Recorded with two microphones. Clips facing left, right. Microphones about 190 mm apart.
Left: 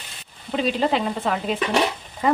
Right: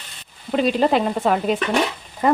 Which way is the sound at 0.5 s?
50° right (ahead or behind).